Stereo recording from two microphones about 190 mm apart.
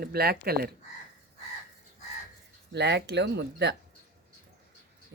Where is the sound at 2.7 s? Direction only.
65° right (ahead or behind).